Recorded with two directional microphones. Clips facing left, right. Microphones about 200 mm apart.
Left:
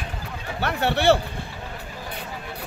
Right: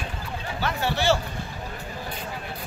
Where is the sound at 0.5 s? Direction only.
65° left (ahead or behind).